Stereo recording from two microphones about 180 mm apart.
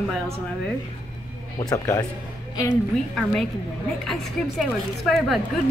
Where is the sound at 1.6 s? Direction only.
20° left (ahead or behind).